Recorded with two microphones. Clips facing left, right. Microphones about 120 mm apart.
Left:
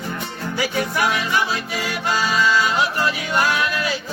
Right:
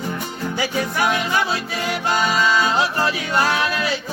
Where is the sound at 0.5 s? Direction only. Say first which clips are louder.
Left 1 dB; 25° right (ahead or behind).